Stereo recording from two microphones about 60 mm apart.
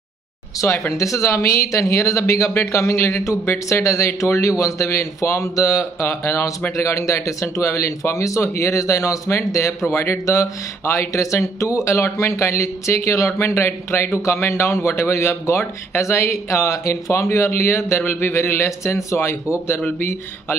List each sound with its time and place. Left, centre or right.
0.6 s speech: left
9.8 s speech: left